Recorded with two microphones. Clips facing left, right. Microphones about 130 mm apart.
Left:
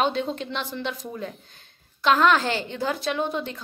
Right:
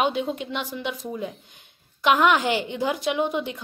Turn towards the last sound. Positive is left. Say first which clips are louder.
# right 2 dB
turn(degrees=-15)  # may be behind; listen again after turning